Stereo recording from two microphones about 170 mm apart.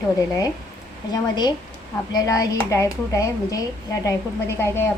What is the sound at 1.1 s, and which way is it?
A woman's voice, 25° left (ahead or behind).